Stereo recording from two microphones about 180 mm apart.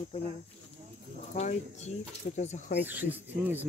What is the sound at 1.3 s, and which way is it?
Speech, 40° left (ahead or behind).